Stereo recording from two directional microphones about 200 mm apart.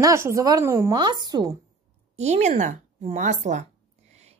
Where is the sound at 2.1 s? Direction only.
35° right (ahead or behind).